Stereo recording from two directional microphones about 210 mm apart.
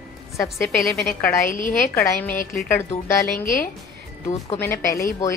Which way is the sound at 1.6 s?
40° left (ahead or behind).